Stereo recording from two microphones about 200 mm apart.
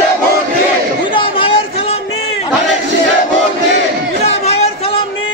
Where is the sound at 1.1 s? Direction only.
25° left (ahead or behind).